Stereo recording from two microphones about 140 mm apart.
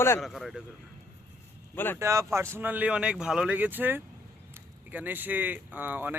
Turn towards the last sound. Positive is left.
turn(degrees=-15)  # may be behind; listen again after turning